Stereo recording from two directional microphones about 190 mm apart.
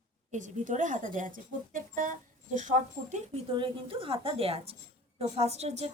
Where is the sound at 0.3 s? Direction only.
40° right (ahead or behind).